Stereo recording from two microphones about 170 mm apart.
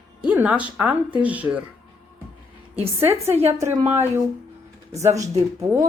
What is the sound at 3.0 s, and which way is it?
Speech, 15° right (ahead or behind).